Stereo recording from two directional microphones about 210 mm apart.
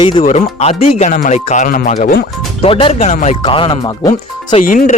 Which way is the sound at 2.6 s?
25° left (ahead or behind).